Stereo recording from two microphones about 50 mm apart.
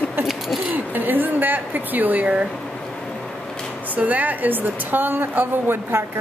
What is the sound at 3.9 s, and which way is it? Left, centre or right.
A woman's voice, right.